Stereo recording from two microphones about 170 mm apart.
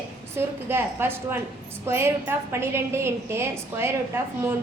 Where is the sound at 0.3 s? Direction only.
15° right (ahead or behind).